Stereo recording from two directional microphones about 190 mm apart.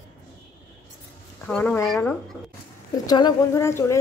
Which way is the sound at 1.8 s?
15° left (ahead or behind).